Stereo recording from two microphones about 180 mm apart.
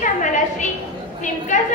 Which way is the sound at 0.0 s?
45° left (ahead or behind).